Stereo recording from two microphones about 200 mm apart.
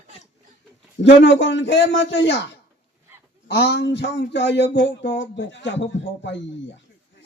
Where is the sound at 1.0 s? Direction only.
65° left (ahead or behind).